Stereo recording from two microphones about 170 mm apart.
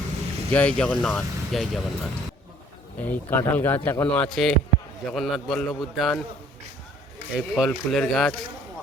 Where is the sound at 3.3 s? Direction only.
10° left (ahead or behind).